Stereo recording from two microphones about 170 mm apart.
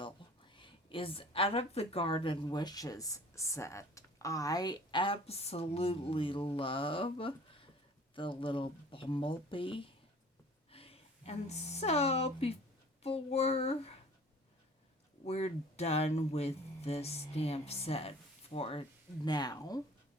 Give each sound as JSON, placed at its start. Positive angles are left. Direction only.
{"t": 0.0, "sound": "a woman's voice", "side_deg": 30}
{"t": 15.3, "sound": "speech", "side_deg": 40}